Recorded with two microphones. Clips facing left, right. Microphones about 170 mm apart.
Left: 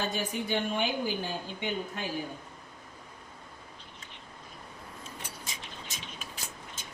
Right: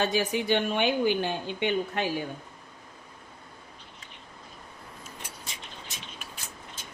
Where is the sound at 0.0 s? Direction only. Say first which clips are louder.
Right 6 dB; 80° right.